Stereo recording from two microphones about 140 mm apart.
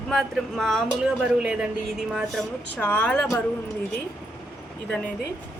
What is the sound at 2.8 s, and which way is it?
Speech, 10° left (ahead or behind).